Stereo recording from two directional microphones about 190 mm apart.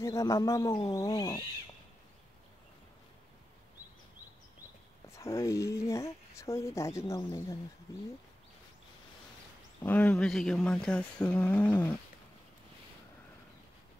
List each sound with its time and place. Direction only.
0.0 s speech: 15° left (ahead or behind)
5.1 s speech: 15° left (ahead or behind)
9.8 s speech: 5° left (ahead or behind)